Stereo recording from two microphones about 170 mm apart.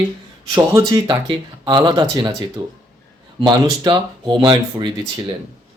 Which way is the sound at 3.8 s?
25° right (ahead or behind).